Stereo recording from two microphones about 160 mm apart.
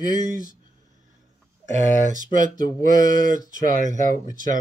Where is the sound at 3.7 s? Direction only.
50° right (ahead or behind).